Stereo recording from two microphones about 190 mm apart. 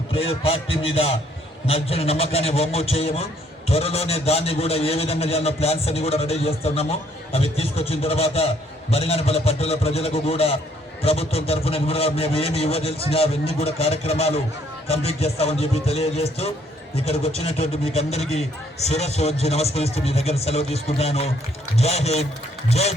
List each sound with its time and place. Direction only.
0.1 s a man's voice: 30° left (ahead or behind)